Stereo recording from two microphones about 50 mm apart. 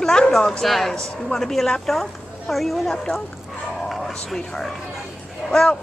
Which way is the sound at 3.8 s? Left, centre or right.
Centre.